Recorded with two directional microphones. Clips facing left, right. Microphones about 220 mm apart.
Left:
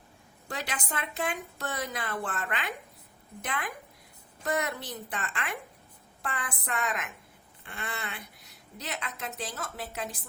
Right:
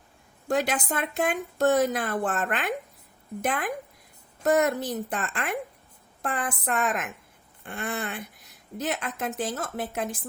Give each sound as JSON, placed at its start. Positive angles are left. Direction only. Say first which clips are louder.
{"t": 0.4, "sound": "a woman's voice", "louder": "right 11 dB", "side_deg": -45}